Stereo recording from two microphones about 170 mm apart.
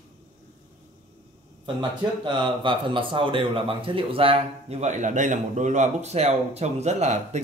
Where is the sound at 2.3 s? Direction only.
30° right (ahead or behind).